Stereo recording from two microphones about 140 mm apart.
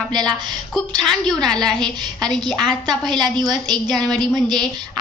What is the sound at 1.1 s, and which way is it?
A woman's voice, 5° left (ahead or behind).